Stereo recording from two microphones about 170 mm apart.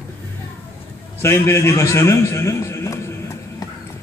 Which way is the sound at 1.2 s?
15° left (ahead or behind).